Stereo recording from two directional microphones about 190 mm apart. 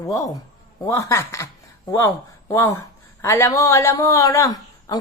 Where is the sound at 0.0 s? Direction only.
15° left (ahead or behind).